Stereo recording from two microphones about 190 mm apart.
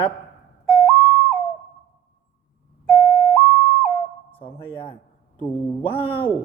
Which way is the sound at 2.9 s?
Centre (ahead or behind).